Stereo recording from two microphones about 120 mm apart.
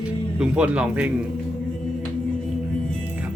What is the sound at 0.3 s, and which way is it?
Speech, 10° right (ahead or behind).